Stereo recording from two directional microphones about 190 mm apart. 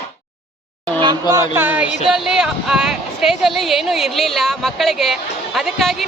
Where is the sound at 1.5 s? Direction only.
10° right (ahead or behind).